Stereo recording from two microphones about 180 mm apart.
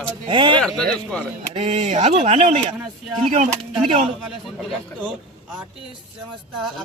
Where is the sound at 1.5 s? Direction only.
35° right (ahead or behind).